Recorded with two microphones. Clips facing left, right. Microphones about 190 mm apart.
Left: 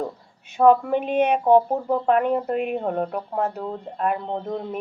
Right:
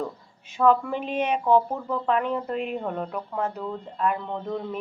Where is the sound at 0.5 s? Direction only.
50° left (ahead or behind).